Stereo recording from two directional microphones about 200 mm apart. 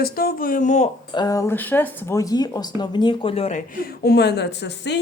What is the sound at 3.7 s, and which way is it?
Speech, 50° left (ahead or behind).